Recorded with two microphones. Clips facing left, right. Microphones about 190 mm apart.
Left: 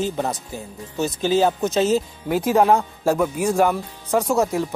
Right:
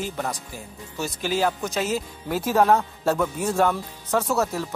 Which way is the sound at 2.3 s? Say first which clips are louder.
Left 3 dB; 15° left (ahead or behind).